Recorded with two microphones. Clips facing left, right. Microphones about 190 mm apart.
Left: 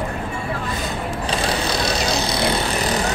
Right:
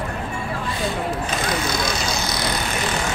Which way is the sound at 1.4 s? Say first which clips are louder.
Left 2 dB; 35° left (ahead or behind).